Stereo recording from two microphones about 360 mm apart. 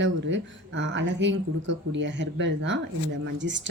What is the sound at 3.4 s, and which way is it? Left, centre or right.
Speech, right.